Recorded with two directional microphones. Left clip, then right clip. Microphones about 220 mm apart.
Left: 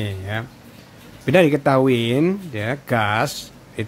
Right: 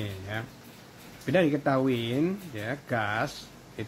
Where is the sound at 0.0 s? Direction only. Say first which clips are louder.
Left 8 dB; 30° left (ahead or behind).